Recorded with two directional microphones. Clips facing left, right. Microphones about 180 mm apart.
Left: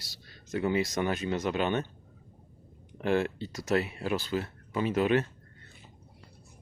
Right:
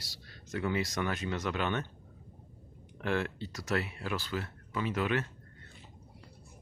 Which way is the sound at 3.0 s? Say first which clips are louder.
Left 5 dB; 20° left (ahead or behind).